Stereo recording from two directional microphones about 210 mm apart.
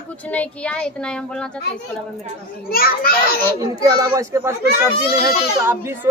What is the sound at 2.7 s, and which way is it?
Speech, 45° left (ahead or behind).